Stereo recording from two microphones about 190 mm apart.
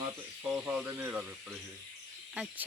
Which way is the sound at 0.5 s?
5° right (ahead or behind).